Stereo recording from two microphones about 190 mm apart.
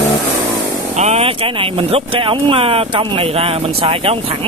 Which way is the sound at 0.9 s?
35° right (ahead or behind).